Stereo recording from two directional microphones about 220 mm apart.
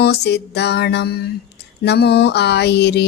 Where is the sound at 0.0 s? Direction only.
50° left (ahead or behind).